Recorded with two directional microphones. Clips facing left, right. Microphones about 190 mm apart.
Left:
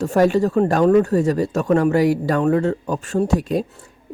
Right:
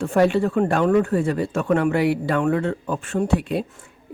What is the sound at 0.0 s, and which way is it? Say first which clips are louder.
Speech: left 2 dB; 40° left (ahead or behind).